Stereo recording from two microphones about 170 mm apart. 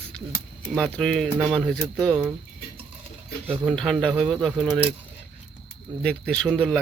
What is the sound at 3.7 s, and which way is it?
Speech, 5° left (ahead or behind).